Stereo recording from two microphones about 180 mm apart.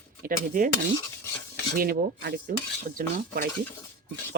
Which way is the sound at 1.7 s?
55° right (ahead or behind).